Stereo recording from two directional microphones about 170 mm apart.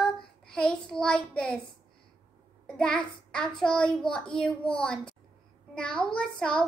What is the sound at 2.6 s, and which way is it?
A child's voice, 5° left (ahead or behind).